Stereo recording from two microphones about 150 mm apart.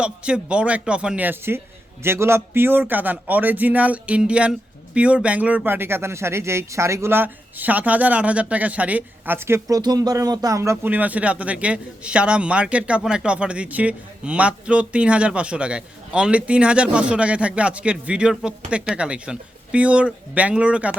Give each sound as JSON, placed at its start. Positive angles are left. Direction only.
{"t": 0.0, "sound": "speech", "side_deg": -5}